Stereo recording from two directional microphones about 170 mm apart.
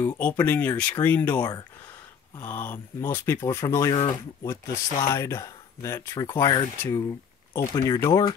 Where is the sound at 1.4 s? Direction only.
25° left (ahead or behind).